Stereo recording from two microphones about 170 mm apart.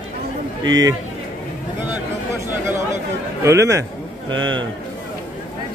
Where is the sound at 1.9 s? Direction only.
15° right (ahead or behind).